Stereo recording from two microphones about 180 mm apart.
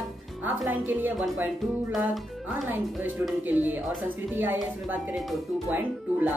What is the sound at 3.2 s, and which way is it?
Speech, 10° right (ahead or behind).